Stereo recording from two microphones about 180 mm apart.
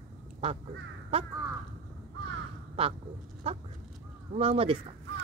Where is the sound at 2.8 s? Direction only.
30° right (ahead or behind).